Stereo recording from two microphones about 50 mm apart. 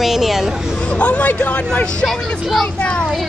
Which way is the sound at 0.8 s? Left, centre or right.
Left.